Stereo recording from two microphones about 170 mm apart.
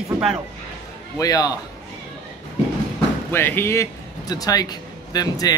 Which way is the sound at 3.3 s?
15° left (ahead or behind).